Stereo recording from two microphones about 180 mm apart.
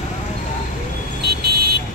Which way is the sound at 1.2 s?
60° right (ahead or behind).